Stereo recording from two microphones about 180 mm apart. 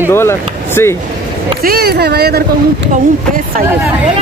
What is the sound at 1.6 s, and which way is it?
Speech, 60° right (ahead or behind).